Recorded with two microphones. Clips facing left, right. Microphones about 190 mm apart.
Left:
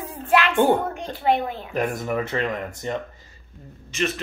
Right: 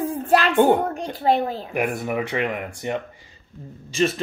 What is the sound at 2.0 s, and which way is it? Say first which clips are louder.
Speech: right 1 dB; 15° right (ahead or behind).